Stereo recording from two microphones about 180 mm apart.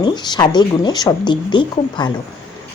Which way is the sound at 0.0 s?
25° left (ahead or behind).